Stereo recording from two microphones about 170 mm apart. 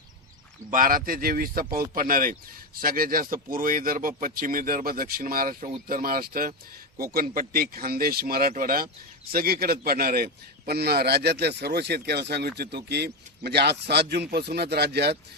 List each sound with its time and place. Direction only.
0.7 s a man's voice: 55° right (ahead or behind); by 15.2 s 75° right (ahead or behind)